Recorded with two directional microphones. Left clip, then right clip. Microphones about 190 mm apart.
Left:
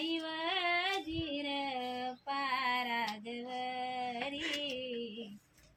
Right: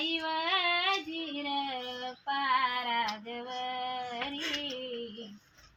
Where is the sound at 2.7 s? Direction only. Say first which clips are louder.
Right 3 dB; 40° left (ahead or behind).